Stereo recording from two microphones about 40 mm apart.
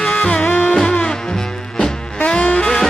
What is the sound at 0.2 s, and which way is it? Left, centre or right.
Music, left.